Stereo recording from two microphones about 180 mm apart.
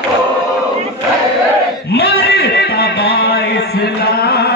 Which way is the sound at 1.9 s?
65° left (ahead or behind).